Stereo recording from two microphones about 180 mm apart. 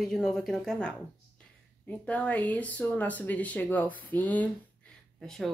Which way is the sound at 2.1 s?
10° left (ahead or behind).